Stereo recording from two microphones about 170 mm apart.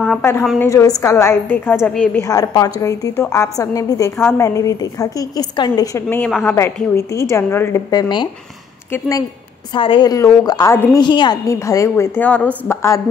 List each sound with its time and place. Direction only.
0.6 s a woman's voice: 15° left (ahead or behind)
2.2 s a woman's voice: 20° left (ahead or behind)
6.0 s a woman's voice: 10° left (ahead or behind)
7.9 s a woman's voice: 25° left (ahead or behind)
8.9 s a woman's voice: 10° left (ahead or behind)
9.7 s a woman's voice: 30° left (ahead or behind)